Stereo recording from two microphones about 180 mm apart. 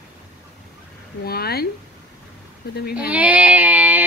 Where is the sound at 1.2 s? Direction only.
60° left (ahead or behind).